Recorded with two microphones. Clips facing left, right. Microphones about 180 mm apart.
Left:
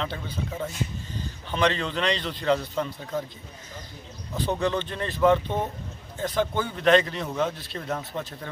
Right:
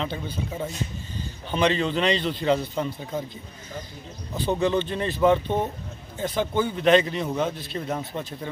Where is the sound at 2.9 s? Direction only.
15° right (ahead or behind).